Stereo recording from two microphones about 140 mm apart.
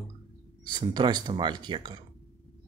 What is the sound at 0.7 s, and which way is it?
Speech, 30° right (ahead or behind).